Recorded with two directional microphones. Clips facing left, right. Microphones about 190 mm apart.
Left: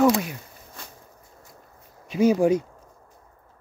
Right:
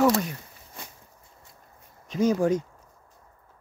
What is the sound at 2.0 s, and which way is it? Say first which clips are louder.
Speech: left 4 dB; 10° left (ahead or behind).